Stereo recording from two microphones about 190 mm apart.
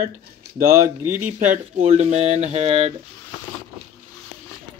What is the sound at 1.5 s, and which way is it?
Speech, 35° right (ahead or behind).